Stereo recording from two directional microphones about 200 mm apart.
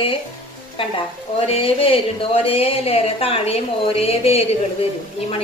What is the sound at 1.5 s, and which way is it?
Speech, 25° left (ahead or behind).